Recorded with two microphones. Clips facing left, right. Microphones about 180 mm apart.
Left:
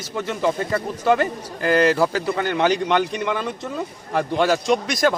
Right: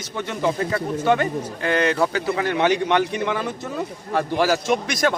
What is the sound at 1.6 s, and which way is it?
A man's voice, centre (ahead or behind).